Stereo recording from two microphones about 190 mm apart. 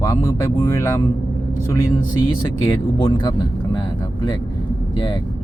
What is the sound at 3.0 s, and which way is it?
Speech, 25° left (ahead or behind).